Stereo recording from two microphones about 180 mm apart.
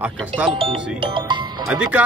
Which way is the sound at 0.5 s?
30° right (ahead or behind).